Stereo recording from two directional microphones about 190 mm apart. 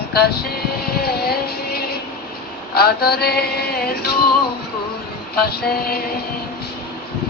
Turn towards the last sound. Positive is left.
turn(degrees=55)  # may be behind; listen again after turning